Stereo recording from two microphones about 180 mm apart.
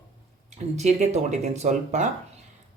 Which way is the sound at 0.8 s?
40° right (ahead or behind).